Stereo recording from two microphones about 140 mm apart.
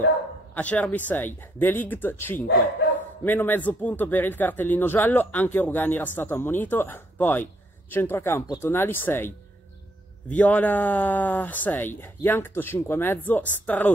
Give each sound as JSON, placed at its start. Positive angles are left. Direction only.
{"t": 0.6, "sound": "speech", "side_deg": 10}
{"t": 10.3, "sound": "speech", "side_deg": 10}